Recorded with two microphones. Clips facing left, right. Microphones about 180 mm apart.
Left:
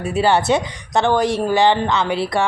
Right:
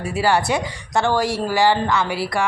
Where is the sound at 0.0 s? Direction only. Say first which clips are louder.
Left 2 dB; 20° left (ahead or behind).